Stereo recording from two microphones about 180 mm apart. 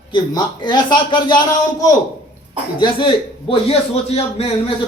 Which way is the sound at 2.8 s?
25° left (ahead or behind).